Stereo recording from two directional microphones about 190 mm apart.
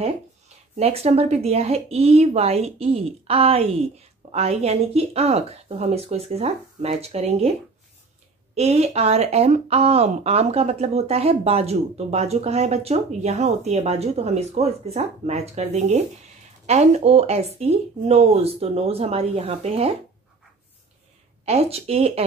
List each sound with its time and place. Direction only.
0.7 s speech: 30° right (ahead or behind)
8.5 s speech: 35° right (ahead or behind)
21.5 s speech: 30° right (ahead or behind)